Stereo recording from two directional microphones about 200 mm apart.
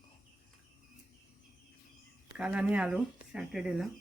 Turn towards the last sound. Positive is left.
turn(degrees=0)  # may be behind; listen again after turning